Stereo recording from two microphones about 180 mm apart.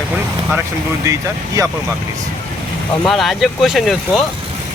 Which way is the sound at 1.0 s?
20° right (ahead or behind).